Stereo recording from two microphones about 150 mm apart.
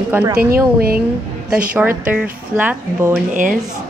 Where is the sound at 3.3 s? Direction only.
60° right (ahead or behind).